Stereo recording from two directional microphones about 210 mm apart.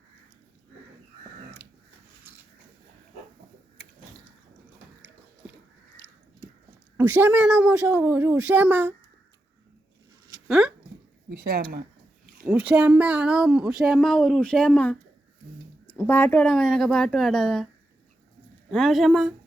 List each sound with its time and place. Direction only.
6.9 s speech: 10° right (ahead or behind)
10.5 s a sound: 5° right (ahead or behind)
11.3 s speech: 45° right (ahead or behind)
12.5 s speech: 5° right (ahead or behind)
18.7 s speech: centre (ahead or behind)